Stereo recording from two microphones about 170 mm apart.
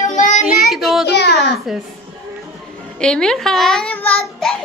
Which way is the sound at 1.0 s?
75° left (ahead or behind).